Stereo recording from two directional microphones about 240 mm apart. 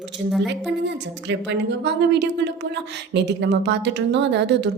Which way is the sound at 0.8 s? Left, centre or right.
Right.